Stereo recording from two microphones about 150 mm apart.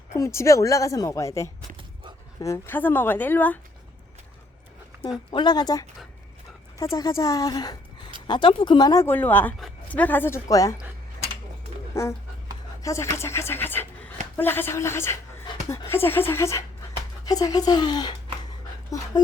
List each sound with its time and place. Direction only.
0.1 s a woman's voice: 20° left (ahead or behind)
5.3 s a woman's voice: 30° left (ahead or behind)
11.9 s a woman's voice: 20° left (ahead or behind)